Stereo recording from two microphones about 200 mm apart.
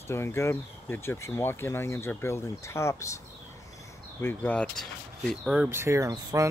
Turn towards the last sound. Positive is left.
turn(degrees=-15)  # may be behind; listen again after turning